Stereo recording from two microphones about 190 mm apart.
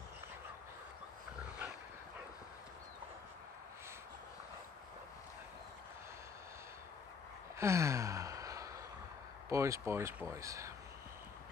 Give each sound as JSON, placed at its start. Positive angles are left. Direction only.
{"t": 7.5, "sound": "gasp", "side_deg": -15}
{"t": 9.5, "sound": "speech", "side_deg": -15}